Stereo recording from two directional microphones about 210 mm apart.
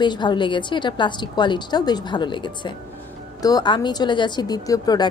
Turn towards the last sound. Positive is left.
turn(degrees=20)  # may be behind; listen again after turning